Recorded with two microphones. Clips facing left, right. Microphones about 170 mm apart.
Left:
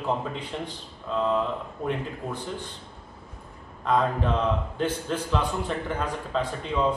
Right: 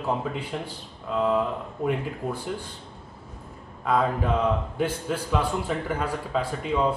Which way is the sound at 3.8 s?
5° right (ahead or behind).